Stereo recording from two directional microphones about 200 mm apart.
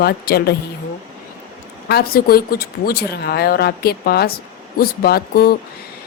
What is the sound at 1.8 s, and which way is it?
A woman's voice, 50° left (ahead or behind).